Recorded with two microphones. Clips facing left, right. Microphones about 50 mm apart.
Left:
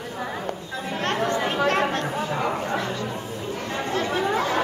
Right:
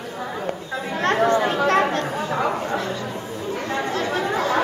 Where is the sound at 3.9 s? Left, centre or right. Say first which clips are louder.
Left 2 dB; centre.